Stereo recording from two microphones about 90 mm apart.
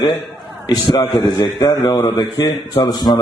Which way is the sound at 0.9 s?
40° left (ahead or behind).